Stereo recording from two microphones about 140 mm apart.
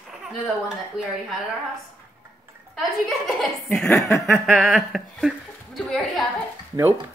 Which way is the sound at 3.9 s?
20° left (ahead or behind).